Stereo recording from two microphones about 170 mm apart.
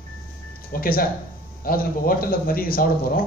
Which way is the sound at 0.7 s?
60° left (ahead or behind).